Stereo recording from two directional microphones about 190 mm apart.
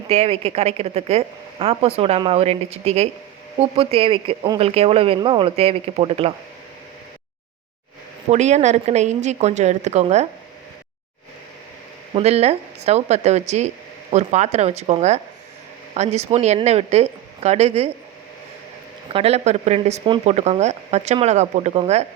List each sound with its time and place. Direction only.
0.1 s speech: 35° right (ahead or behind)
8.3 s speech: 35° right (ahead or behind)
12.1 s speech: 35° right (ahead or behind)
19.1 s speech: 30° right (ahead or behind)